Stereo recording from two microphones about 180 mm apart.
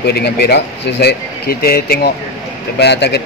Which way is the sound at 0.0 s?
65° left (ahead or behind).